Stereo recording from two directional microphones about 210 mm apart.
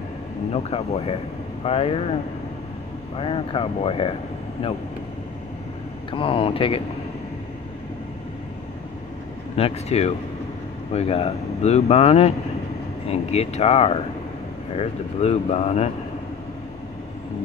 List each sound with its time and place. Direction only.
0.5 s speech: 30° left (ahead or behind)
3.2 s speech: 25° left (ahead or behind)
6.1 s speech: 25° left (ahead or behind)
9.6 s speech: 30° left (ahead or behind)